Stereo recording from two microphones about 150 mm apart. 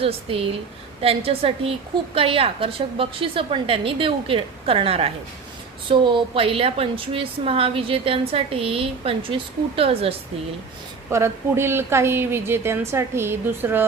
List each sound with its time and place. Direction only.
0.0 s a woman's voice: 40° right (ahead or behind)
11.1 s a woman's voice: 15° right (ahead or behind)